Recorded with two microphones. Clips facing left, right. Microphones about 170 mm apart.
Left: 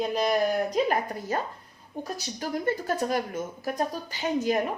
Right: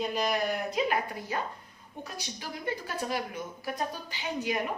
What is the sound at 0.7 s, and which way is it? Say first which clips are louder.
A woman's voice: left 4 dB; 45° left (ahead or behind).